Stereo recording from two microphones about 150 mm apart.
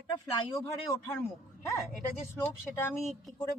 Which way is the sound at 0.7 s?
20° left (ahead or behind).